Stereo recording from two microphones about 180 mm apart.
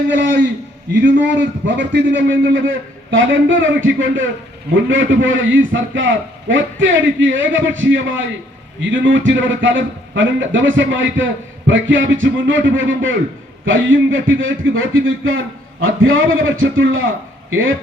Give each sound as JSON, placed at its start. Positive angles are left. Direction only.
{"t": 0.1, "sound": "a man's voice", "side_deg": -90}
{"t": 1.0, "sound": "a man's voice", "side_deg": -80}